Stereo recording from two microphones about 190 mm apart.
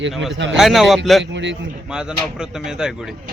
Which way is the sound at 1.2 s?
70° right (ahead or behind).